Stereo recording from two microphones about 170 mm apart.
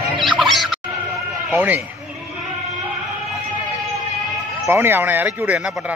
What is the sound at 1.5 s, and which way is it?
Speech, 10° right (ahead or behind).